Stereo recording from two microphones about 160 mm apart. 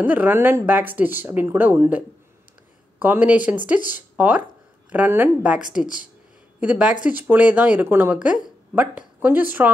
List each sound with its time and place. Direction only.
0.0 s speech: 10° right (ahead or behind)